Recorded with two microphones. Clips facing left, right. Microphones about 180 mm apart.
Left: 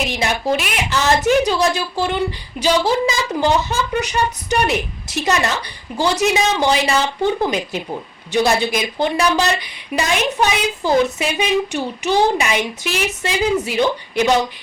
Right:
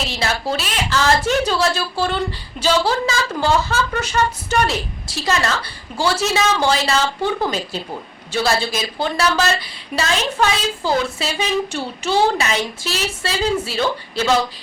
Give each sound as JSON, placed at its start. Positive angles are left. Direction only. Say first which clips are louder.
{"t": 0.0, "sound": "a woman's voice", "louder": "left 2 dB", "side_deg": 15}